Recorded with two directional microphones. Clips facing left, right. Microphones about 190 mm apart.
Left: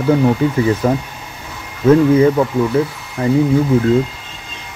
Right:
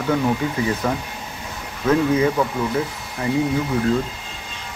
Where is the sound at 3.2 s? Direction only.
35° left (ahead or behind).